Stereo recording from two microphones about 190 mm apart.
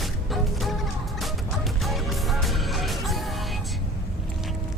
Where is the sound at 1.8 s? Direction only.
Centre (ahead or behind).